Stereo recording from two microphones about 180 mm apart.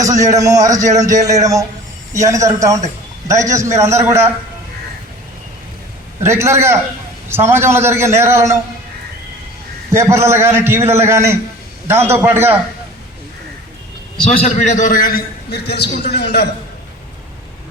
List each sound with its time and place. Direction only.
0.0 s a man's voice: 20° right (ahead or behind)
6.2 s a man's voice: 15° right (ahead or behind)
9.9 s a man's voice: 15° right (ahead or behind)
14.3 s a man's voice: 40° left (ahead or behind); by 16.5 s 65° left (ahead or behind)